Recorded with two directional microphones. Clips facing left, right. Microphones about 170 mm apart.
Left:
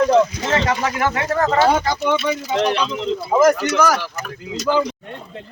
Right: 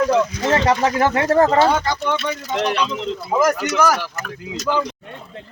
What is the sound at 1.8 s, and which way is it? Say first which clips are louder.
Speech: left 2 dB; 5° left (ahead or behind).